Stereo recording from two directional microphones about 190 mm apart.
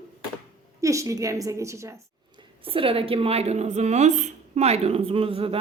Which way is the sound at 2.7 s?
30° right (ahead or behind).